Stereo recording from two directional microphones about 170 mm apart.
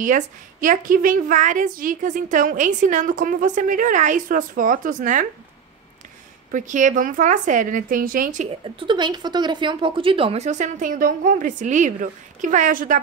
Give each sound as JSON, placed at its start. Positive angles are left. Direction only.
{"t": 0.0, "sound": "a woman's voice", "side_deg": -50}
{"t": 6.5, "sound": "a woman's voice", "side_deg": -50}
{"t": 8.5, "sound": "a woman's voice", "side_deg": -30}